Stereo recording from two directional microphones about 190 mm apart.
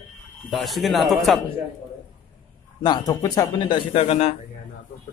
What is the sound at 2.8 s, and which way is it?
Speech, 20° left (ahead or behind).